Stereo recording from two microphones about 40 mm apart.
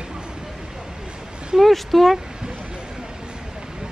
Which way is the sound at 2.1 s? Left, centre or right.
Centre.